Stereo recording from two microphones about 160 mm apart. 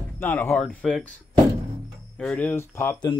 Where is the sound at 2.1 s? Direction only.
5° left (ahead or behind).